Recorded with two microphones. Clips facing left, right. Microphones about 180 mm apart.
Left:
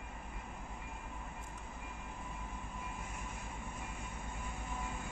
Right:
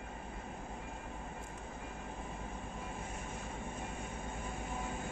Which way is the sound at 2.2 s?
30° right (ahead or behind).